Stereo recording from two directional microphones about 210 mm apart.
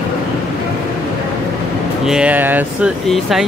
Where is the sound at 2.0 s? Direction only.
5° right (ahead or behind).